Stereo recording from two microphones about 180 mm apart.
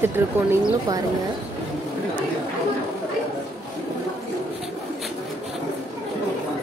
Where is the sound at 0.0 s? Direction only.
15° right (ahead or behind).